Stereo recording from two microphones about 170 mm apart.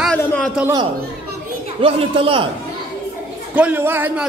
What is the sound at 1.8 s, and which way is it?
Speech, 35° right (ahead or behind).